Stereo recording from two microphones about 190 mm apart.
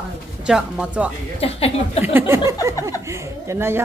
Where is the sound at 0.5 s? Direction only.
5° right (ahead or behind).